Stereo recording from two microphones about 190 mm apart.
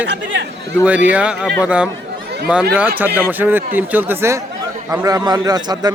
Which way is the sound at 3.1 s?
10° right (ahead or behind).